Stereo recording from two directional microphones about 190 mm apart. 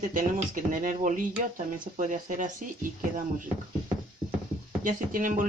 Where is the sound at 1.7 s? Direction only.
40° right (ahead or behind).